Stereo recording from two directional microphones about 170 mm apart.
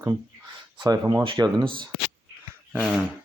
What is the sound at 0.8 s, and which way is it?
Speech, 20° right (ahead or behind).